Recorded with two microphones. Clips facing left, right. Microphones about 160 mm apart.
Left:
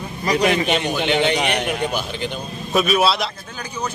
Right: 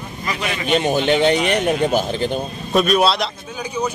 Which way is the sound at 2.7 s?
Centre (ahead or behind).